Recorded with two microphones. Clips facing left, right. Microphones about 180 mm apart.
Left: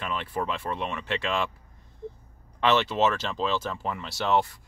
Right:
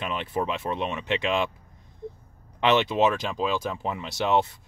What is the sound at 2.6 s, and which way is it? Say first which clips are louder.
Speech: right 2 dB; 15° right (ahead or behind).